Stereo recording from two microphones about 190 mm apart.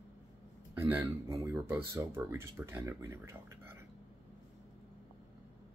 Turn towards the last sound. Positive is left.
turn(degrees=-15)  # may be behind; listen again after turning